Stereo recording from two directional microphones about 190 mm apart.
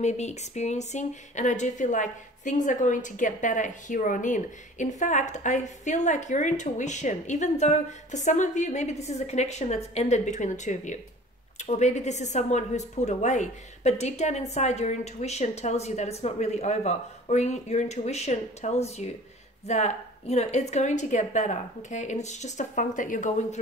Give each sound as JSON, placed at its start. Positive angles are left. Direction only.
{"t": 0.0, "sound": "speech", "side_deg": 35}